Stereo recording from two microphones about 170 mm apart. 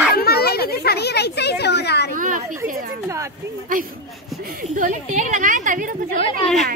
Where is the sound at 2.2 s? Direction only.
50° right (ahead or behind).